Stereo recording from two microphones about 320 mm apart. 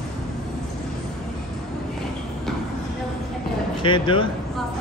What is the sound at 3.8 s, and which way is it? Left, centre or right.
Speech, centre.